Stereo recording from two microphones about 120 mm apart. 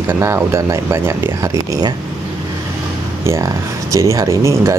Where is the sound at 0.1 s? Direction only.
20° right (ahead or behind).